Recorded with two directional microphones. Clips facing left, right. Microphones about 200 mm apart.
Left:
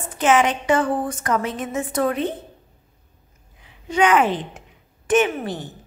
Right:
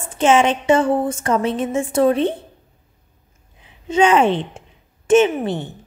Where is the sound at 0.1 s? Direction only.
25° right (ahead or behind).